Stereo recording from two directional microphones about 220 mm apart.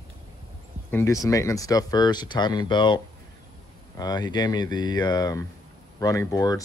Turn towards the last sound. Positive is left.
turn(degrees=15)  # may be behind; listen again after turning